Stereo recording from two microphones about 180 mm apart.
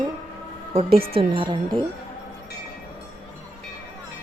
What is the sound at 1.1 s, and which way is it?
Speech, 25° right (ahead or behind).